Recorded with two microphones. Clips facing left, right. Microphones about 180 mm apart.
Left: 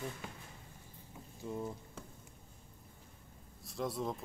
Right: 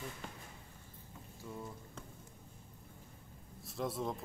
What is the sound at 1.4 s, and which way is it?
Speech, 20° left (ahead or behind).